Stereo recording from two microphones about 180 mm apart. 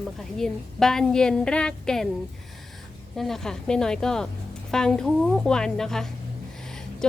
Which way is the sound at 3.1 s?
Centre (ahead or behind).